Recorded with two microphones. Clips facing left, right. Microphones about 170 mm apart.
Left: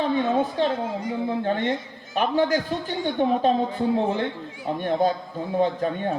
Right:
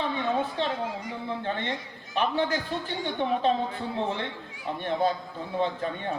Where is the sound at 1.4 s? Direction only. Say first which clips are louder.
Left 7 dB; 45° left (ahead or behind).